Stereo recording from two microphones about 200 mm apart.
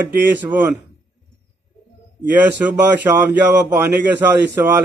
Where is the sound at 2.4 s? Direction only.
10° right (ahead or behind).